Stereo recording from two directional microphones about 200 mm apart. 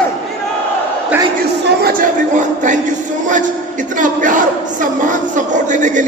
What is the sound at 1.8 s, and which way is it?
A man's voice, 45° right (ahead or behind).